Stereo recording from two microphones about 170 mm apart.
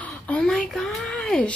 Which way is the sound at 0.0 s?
10° left (ahead or behind).